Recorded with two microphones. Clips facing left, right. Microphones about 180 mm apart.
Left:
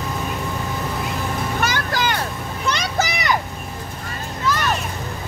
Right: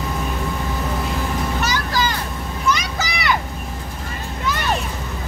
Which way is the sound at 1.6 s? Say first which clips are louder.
Left 1 dB; 55° left (ahead or behind).